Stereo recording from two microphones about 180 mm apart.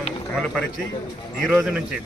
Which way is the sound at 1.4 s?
5° right (ahead or behind).